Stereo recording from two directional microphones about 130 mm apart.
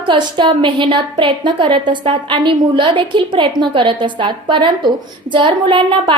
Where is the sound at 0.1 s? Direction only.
40° right (ahead or behind).